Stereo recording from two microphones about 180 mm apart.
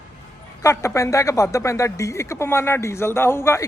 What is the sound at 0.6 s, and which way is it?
Speech, 15° left (ahead or behind).